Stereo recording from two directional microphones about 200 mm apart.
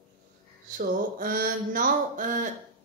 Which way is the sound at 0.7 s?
45° right (ahead or behind).